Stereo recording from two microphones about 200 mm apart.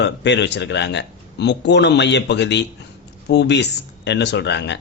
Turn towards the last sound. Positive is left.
turn(degrees=60)  # may be behind; listen again after turning